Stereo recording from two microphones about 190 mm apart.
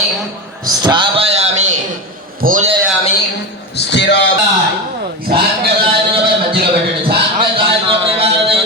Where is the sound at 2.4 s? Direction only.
45° right (ahead or behind).